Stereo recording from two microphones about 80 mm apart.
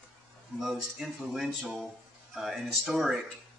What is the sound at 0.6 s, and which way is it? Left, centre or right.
Speech, centre.